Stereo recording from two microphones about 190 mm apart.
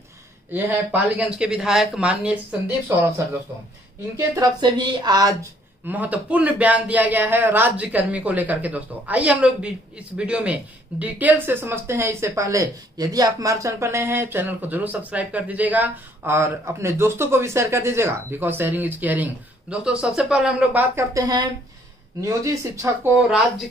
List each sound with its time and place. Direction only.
0.5 s speech: 10° right (ahead or behind)
4.4 s speech: 25° right (ahead or behind)
5.9 s speech: 10° right (ahead or behind)